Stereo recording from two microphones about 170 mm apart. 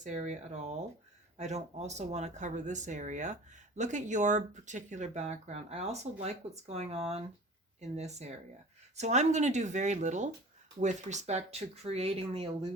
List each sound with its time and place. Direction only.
0.0 s speech: 45° right (ahead or behind)